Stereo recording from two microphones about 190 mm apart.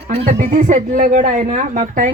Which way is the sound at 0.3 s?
45° right (ahead or behind).